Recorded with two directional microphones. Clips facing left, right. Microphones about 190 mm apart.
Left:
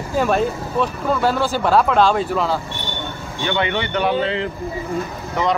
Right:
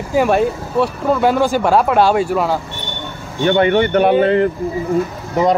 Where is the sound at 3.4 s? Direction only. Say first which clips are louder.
Right 9 dB; 45° right (ahead or behind).